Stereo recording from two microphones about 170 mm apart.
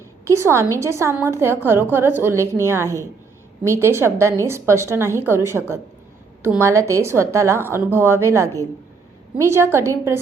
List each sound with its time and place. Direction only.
0.3 s a woman's voice: 15° right (ahead or behind)